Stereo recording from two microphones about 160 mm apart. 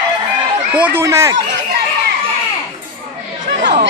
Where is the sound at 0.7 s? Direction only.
10° right (ahead or behind).